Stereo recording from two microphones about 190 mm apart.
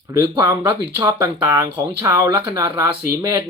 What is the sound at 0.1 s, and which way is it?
Speech, 20° right (ahead or behind).